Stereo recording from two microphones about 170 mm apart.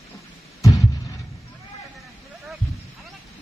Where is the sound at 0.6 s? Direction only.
20° left (ahead or behind).